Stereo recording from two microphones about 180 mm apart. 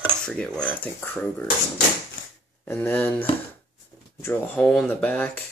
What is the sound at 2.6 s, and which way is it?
Speech, 10° left (ahead or behind).